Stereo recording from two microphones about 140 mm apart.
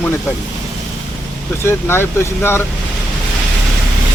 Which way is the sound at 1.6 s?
20° left (ahead or behind).